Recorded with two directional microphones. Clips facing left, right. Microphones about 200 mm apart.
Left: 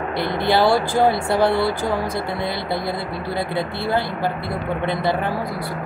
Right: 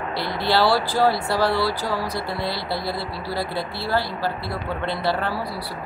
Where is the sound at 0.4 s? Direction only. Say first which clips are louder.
Left 2 dB; 20° left (ahead or behind).